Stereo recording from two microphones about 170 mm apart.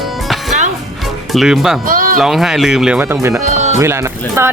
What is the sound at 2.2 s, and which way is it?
Speech, centre (ahead or behind).